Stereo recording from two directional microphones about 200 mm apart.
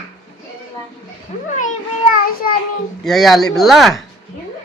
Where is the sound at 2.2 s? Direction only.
45° left (ahead or behind).